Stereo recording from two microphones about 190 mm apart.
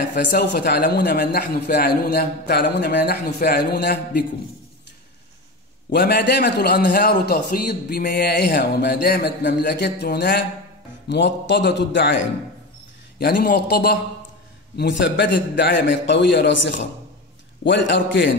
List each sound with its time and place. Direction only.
0.3 s a man's voice: 60° left (ahead or behind)
5.9 s a man's voice: 60° left (ahead or behind)
13.2 s a man's voice: 55° left (ahead or behind)
14.8 s a man's voice: 70° left (ahead or behind)